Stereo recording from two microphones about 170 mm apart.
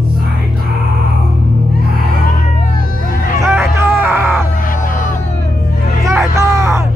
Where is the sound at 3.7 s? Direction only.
15° right (ahead or behind).